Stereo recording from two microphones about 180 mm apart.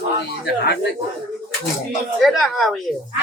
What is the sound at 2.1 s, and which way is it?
Speech, centre (ahead or behind).